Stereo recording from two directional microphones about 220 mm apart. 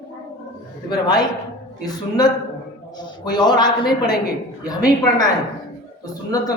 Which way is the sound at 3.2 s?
20° left (ahead or behind).